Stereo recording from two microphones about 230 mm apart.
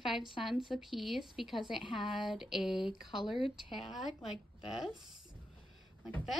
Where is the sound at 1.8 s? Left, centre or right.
Left.